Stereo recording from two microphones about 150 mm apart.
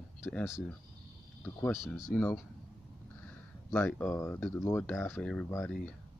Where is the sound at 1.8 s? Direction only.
Centre (ahead or behind).